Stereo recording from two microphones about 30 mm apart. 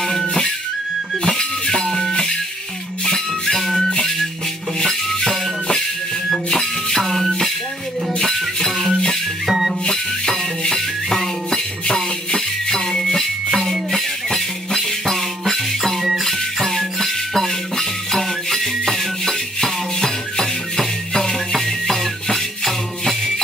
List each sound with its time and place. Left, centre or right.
0.0 s music: centre
1.7 s music: centre
4.8 s music: centre
7.0 s music: centre
8.2 s music: centre
9.5 s music: centre
11.1 s music: centre
12.9 s a sound: centre
15.0 s music: centre